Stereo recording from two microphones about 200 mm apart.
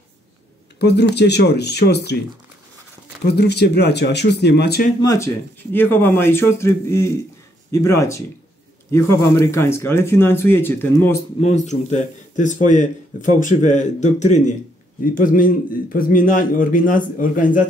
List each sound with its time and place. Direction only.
0.7 s speech: 55° left (ahead or behind)
3.3 s speech: 55° left (ahead or behind)
5.0 s speech: 15° left (ahead or behind)
11.4 s a man's voice: 35° left (ahead or behind)